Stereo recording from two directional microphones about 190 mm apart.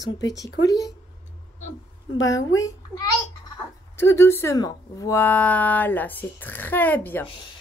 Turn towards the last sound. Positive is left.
turn(degrees=10)  # may be behind; listen again after turning